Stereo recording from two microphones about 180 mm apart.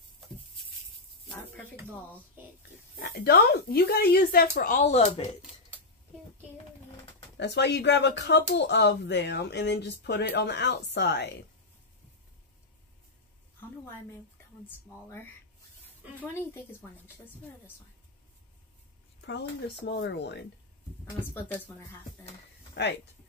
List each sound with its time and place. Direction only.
3.0 s speech: 60° left (ahead or behind)
4.6 s speech: 45° left (ahead or behind)
7.3 s speech: 75° left (ahead or behind)
16.2 s speech: 15° left (ahead or behind)
19.2 s speech: 70° left (ahead or behind)
21.0 s speech: 10° left (ahead or behind)
22.8 s speech: 70° left (ahead or behind)